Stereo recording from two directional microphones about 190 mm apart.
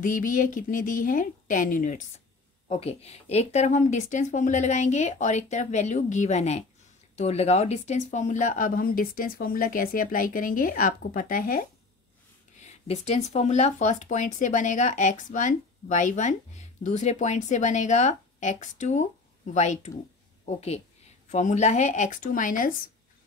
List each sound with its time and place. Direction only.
0.0 s speech: 45° left (ahead or behind)
2.7 s speech: 30° left (ahead or behind)